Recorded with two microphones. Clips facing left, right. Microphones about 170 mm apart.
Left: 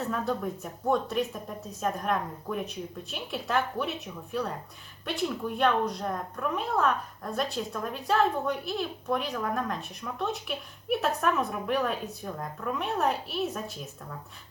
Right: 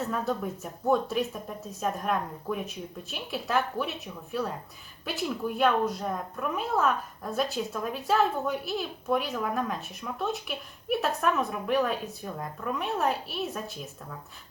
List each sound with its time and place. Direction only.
0.0 s a woman's voice: centre (ahead or behind)